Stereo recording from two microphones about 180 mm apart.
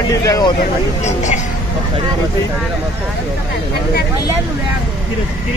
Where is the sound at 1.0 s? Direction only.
40° left (ahead or behind).